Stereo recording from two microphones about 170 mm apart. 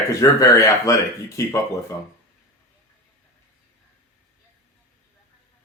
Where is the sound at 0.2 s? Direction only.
20° left (ahead or behind).